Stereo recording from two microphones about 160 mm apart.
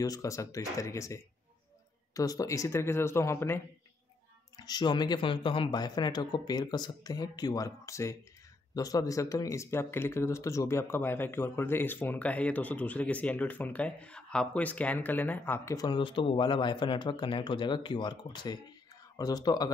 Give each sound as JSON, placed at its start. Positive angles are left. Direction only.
{"t": 0.0, "sound": "speech", "side_deg": 20}
{"t": 4.6, "sound": "speech", "side_deg": 25}